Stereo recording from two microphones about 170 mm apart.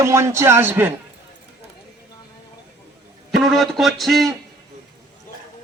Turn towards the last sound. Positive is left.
turn(degrees=0)  # may be behind; listen again after turning